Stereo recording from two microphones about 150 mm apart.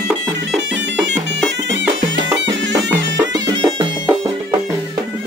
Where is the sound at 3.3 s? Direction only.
25° right (ahead or behind).